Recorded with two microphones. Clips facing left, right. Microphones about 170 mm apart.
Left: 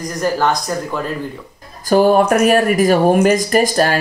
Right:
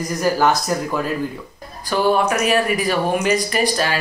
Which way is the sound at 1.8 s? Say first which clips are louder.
Left 6 dB; 45° left (ahead or behind).